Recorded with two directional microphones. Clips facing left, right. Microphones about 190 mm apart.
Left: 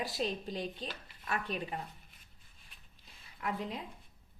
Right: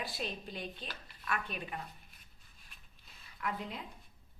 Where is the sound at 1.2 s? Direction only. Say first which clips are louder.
Left 2 dB; 30° left (ahead or behind).